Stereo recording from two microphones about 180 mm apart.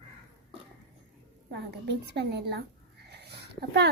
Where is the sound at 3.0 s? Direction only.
70° right (ahead or behind).